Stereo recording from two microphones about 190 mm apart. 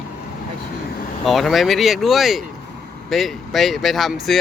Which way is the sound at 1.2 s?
Centre (ahead or behind).